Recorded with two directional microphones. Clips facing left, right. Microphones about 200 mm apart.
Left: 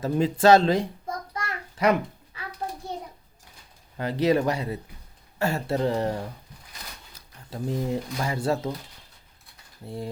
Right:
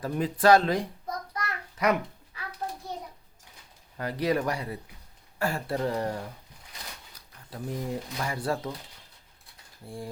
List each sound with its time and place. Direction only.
0.0 s speech: 25° left (ahead or behind)
1.3 s a sound: 25° left (ahead or behind)
3.9 s speech: 25° left (ahead or behind)
9.8 s speech: 25° left (ahead or behind)